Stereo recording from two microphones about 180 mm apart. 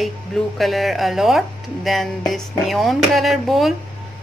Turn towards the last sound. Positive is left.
turn(degrees=0)  # may be behind; listen again after turning